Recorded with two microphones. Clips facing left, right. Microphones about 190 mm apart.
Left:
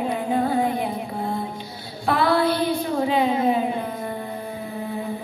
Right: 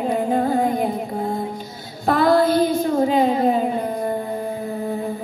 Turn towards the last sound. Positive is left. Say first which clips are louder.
# right 3 dB
turn(degrees=-40)  # may be behind; listen again after turning